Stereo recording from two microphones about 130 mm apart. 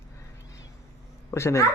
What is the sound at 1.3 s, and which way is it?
Speech, 20° left (ahead or behind).